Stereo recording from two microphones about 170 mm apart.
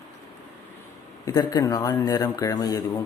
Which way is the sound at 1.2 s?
20° left (ahead or behind).